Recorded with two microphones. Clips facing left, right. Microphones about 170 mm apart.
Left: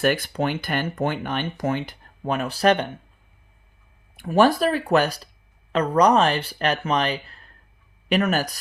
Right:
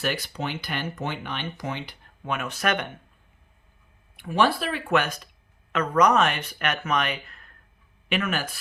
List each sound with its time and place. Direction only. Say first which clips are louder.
0.0 s speech: left 7 dB; 50° left (ahead or behind); by 2.9 s 30° left (ahead or behind)
4.2 s speech: left 6 dB; 45° left (ahead or behind)